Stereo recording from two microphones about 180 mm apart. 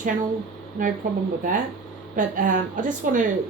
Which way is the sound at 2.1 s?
45° right (ahead or behind).